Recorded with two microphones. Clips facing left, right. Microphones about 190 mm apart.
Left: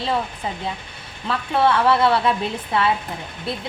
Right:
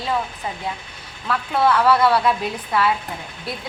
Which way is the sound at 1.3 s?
25° left (ahead or behind).